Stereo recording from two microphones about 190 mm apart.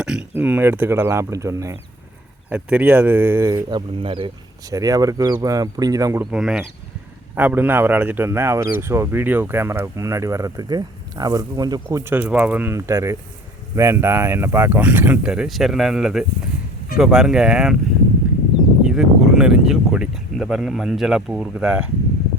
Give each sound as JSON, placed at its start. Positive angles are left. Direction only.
{"t": 0.0, "sound": "speech", "side_deg": -5}
{"t": 6.3, "sound": "speech", "side_deg": -5}
{"t": 18.9, "sound": "speech", "side_deg": 0}